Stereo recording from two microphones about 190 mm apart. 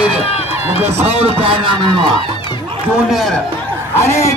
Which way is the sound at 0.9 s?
35° right (ahead or behind).